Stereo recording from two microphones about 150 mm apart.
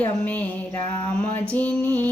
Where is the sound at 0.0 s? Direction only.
10° left (ahead or behind).